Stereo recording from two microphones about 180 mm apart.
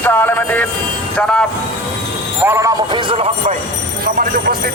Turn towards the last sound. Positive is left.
turn(degrees=-55)  # may be behind; listen again after turning